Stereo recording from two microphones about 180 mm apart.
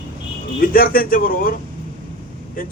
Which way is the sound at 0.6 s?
50° left (ahead or behind).